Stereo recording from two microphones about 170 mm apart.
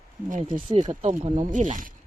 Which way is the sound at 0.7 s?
40° right (ahead or behind).